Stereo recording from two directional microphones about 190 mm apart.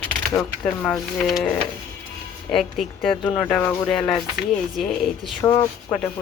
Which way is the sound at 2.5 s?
Centre (ahead or behind).